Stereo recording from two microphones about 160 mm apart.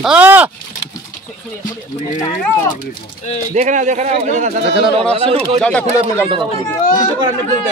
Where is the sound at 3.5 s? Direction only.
50° right (ahead or behind).